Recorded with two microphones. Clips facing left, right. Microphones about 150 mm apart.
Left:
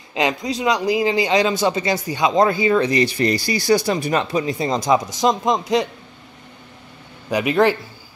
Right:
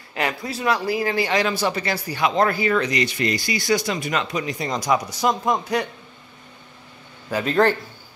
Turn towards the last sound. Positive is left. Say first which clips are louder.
# left 2 dB
turn(degrees=10)  # may be behind; listen again after turning